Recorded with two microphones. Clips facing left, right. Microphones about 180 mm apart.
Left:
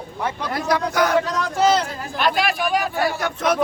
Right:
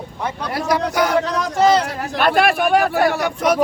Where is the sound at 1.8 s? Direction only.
70° right (ahead or behind).